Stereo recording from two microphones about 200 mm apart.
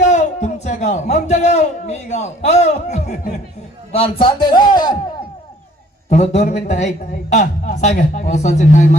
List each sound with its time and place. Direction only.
0.0 s a man's voice: 35° left (ahead or behind)
6.1 s a man's voice: 35° left (ahead or behind)